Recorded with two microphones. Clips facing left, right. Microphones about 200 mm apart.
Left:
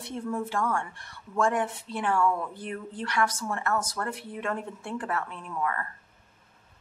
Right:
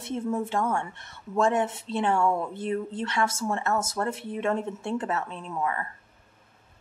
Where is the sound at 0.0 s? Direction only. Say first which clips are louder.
Right 3 dB; 20° right (ahead or behind).